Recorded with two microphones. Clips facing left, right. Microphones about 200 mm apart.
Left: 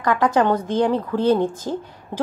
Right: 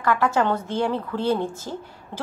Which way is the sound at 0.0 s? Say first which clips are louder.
Left 3 dB; 20° left (ahead or behind).